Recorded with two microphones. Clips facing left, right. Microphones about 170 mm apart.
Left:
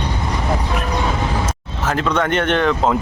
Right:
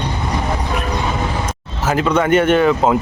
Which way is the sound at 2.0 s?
10° right (ahead or behind).